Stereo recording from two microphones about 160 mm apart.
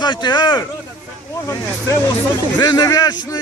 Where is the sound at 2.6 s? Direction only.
25° left (ahead or behind).